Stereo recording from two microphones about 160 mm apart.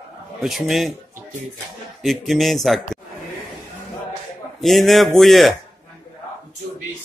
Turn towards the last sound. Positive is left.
turn(degrees=0)  # may be behind; listen again after turning